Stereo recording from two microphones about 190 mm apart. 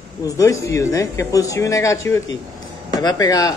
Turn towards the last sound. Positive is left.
turn(degrees=20)  # may be behind; listen again after turning